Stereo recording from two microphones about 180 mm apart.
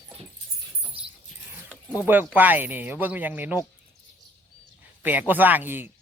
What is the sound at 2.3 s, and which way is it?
Speech, 10° right (ahead or behind).